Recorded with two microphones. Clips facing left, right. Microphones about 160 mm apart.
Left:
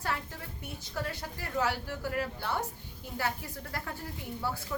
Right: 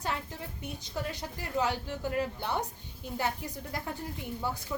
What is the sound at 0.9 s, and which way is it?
A woman's voice, 20° right (ahead or behind).